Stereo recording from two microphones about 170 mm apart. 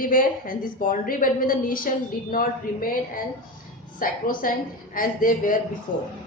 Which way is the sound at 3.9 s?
55° left (ahead or behind).